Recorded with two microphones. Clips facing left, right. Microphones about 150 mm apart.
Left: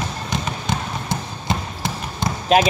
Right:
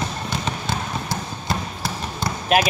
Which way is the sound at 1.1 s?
20° left (ahead or behind).